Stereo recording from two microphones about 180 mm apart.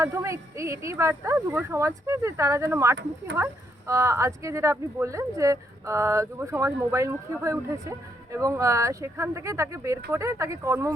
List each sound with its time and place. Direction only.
0.0 s speech: 15° right (ahead or behind)